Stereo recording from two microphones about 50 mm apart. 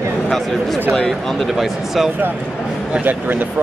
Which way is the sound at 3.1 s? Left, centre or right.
Right.